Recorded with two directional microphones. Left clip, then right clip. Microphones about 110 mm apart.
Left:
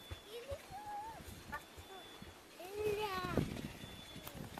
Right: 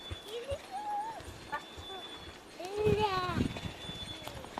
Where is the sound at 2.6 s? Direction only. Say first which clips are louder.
Right 9 dB; 35° left (ahead or behind).